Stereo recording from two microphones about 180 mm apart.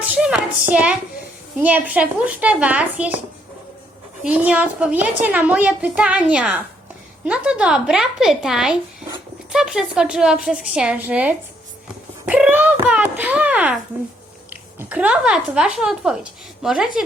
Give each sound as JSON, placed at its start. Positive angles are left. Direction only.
{"t": 0.0, "sound": "a sound", "side_deg": -5}
{"t": 1.6, "sound": "a woman's voice", "side_deg": -10}
{"t": 4.2, "sound": "a woman's voice", "side_deg": -10}